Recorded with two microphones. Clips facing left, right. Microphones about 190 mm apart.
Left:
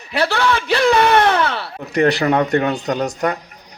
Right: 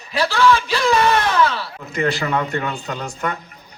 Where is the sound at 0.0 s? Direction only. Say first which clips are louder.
Right 1 dB; 65° left (ahead or behind).